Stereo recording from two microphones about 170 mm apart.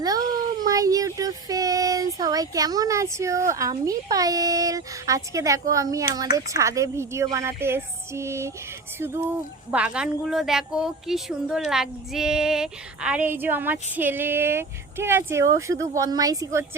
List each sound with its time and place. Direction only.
0.0 s speech: 20° right (ahead or behind)